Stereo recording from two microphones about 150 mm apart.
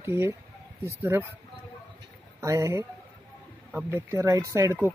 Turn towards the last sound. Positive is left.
turn(degrees=-20)  # may be behind; listen again after turning